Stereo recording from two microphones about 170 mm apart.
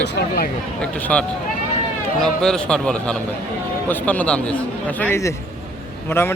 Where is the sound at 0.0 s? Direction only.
75° left (ahead or behind).